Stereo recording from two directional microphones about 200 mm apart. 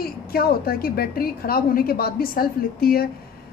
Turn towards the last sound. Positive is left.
turn(degrees=50)  # may be behind; listen again after turning